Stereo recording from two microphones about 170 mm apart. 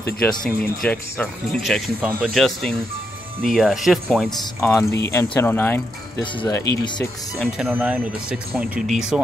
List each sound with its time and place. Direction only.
0.4 s speech: 5° left (ahead or behind)
4.6 s speech: 15° left (ahead or behind)
7.3 s speech: 5° right (ahead or behind)